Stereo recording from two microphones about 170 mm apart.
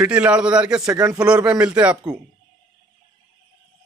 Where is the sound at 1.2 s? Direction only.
5° right (ahead or behind).